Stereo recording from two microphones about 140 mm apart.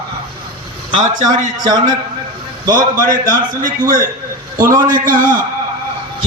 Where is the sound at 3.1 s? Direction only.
75° right (ahead or behind).